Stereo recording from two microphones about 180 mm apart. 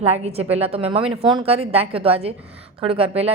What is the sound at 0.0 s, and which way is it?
A woman's voice, 35° right (ahead or behind).